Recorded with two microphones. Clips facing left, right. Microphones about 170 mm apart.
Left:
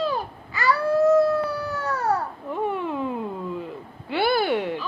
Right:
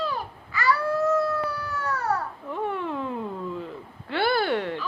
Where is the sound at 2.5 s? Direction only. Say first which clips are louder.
Left 3 dB; 10° left (ahead or behind).